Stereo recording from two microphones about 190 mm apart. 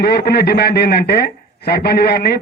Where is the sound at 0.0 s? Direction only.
55° left (ahead or behind).